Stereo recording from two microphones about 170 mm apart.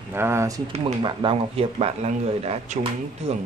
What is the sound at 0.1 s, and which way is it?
Speech, 15° right (ahead or behind).